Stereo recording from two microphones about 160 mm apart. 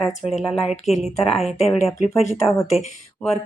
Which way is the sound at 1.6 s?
45° left (ahead or behind).